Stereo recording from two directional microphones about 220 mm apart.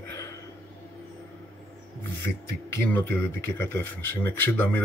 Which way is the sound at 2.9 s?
10° left (ahead or behind).